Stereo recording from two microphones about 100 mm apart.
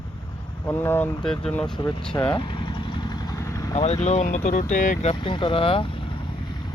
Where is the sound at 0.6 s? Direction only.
20° left (ahead or behind).